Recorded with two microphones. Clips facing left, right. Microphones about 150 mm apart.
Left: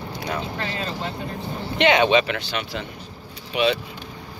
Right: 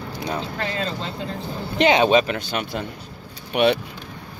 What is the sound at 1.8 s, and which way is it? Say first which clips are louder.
Speech: right 1 dB; 35° right (ahead or behind).